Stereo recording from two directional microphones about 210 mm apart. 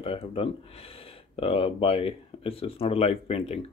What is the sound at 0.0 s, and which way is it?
Speech, 25° left (ahead or behind).